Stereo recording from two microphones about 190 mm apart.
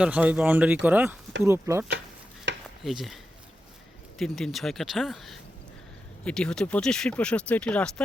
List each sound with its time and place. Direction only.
0.0 s speech: 5° right (ahead or behind)
2.5 s a sound: 70° right (ahead or behind)
2.8 s speech: centre (ahead or behind)
4.2 s speech: centre (ahead or behind)